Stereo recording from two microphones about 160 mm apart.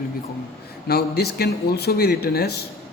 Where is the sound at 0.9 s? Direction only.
80° left.